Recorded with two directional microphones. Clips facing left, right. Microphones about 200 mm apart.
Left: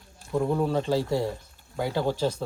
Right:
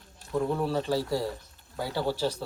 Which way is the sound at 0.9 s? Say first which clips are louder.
Left 3 dB; 25° left (ahead or behind).